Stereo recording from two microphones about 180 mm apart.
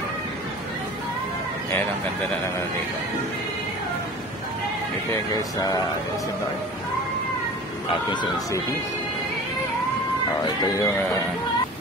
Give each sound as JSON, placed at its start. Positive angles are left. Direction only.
{"t": 5.1, "sound": "speech", "side_deg": 20}
{"t": 7.9, "sound": "speech", "side_deg": 25}
{"t": 10.4, "sound": "speech", "side_deg": 15}